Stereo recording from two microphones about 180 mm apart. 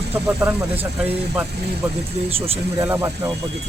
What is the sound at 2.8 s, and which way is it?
Speech, 15° right (ahead or behind).